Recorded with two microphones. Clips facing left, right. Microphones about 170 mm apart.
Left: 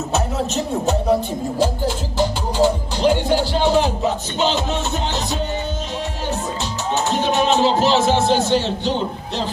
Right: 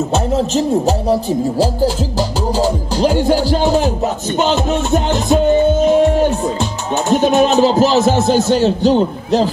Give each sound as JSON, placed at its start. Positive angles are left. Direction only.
{"t": 0.1, "sound": "speech", "side_deg": -30}
{"t": 2.1, "sound": "music", "side_deg": -40}